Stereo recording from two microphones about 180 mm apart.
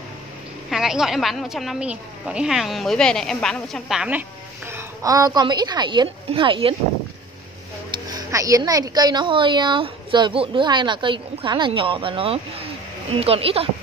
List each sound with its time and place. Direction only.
0.7 s a woman's voice: 5° right (ahead or behind)
4.6 s a woman's voice: 15° right (ahead or behind)
7.9 s a woman's voice: 20° right (ahead or behind)